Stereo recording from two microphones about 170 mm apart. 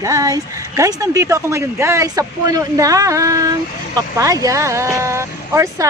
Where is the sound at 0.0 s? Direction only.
20° right (ahead or behind).